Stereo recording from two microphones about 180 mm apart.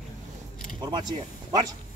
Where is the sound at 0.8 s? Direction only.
25° right (ahead or behind).